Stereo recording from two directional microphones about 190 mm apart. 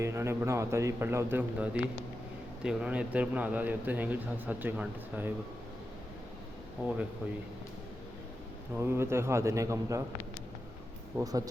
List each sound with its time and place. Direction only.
0.0 s a man's voice: 15° right (ahead or behind)
8.7 s a man's voice: 10° right (ahead or behind)
11.2 s speech: 20° right (ahead or behind)